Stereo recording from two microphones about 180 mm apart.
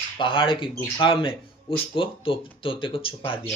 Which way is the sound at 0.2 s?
30° left (ahead or behind).